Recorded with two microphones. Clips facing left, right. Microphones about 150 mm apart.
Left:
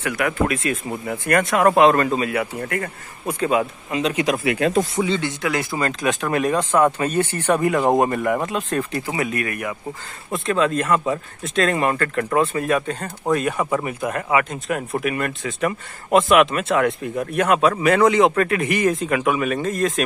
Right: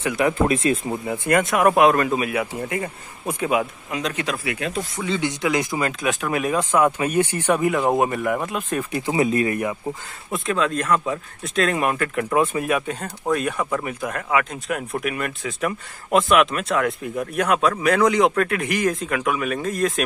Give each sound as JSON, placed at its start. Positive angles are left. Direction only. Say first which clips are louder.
{"t": 0.3, "sound": "speech", "louder": "right 3 dB", "side_deg": -30}
{"t": 1.0, "sound": "speech", "louder": "left 1 dB", "side_deg": -20}
{"t": 1.6, "sound": "speech", "louder": "left 2 dB", "side_deg": -5}
{"t": 4.0, "sound": "speech", "louder": "left 6 dB", "side_deg": 10}
{"t": 4.6, "sound": "speech", "louder": "left 8 dB", "side_deg": 35}
{"t": 5.2, "sound": "speech", "louder": "right 1 dB", "side_deg": -20}
{"t": 7.5, "sound": "speech", "louder": "left 2 dB", "side_deg": 0}
{"t": 9.1, "sound": "speech", "louder": "right 7 dB", "side_deg": -25}
{"t": 10.3, "sound": "speech", "louder": "left 3 dB", "side_deg": 0}